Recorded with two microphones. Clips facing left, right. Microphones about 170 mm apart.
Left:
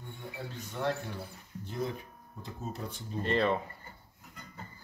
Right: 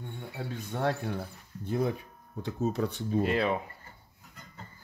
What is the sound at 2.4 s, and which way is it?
Speech, 75° right (ahead or behind).